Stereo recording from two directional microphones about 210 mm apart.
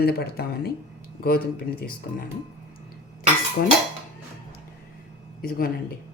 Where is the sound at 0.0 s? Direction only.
50° left (ahead or behind).